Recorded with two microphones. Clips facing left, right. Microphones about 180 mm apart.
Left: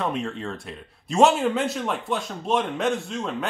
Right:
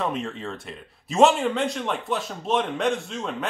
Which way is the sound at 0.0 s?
Centre (ahead or behind).